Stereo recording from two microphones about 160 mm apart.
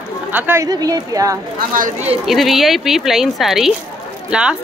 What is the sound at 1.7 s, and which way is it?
Speech, 55° right (ahead or behind).